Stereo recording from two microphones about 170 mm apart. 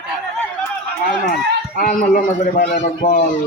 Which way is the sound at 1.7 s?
55° left (ahead or behind).